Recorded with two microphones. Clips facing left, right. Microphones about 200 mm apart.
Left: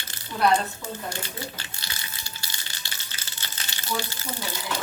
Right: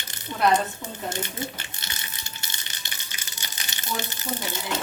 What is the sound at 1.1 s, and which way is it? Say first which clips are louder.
Speech: right 3 dB; 20° right (ahead or behind).